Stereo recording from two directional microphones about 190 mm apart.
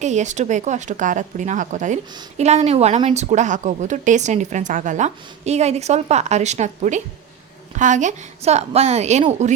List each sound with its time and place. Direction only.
0.0 s speech: 40° right (ahead or behind)